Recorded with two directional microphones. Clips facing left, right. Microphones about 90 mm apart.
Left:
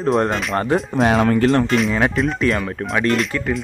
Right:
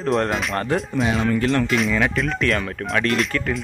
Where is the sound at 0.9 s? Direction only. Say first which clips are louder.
Left 6 dB; 55° left (ahead or behind).